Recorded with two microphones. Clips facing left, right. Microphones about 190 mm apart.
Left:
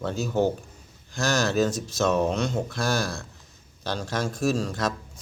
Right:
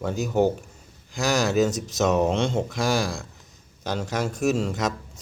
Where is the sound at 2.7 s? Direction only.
15° right (ahead or behind).